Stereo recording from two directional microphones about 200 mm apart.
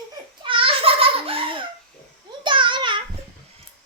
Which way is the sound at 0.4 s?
25° right (ahead or behind).